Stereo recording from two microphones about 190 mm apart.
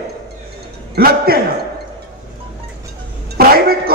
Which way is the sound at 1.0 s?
50° right (ahead or behind).